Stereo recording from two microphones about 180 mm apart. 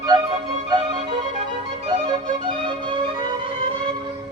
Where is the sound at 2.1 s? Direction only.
25° right (ahead or behind).